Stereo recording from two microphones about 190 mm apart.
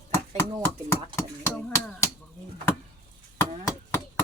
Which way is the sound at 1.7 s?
15° left (ahead or behind).